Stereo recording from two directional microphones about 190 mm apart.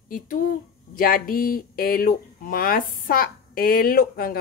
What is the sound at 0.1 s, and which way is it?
A woman's voice, 45° left (ahead or behind).